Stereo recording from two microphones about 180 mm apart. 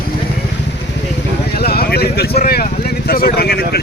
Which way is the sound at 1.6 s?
60° left (ahead or behind).